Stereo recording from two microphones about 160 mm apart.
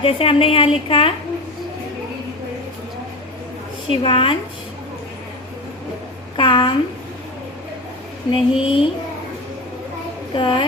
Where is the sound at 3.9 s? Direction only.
35° left (ahead or behind).